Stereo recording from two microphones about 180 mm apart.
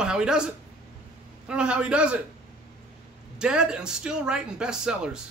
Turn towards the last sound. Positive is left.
turn(degrees=-5)  # may be behind; listen again after turning